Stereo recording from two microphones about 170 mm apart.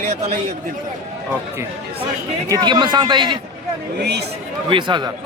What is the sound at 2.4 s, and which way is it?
Speech, 25° right (ahead or behind).